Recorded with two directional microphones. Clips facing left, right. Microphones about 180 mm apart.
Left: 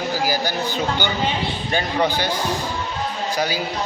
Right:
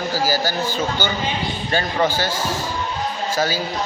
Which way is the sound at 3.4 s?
15° left (ahead or behind).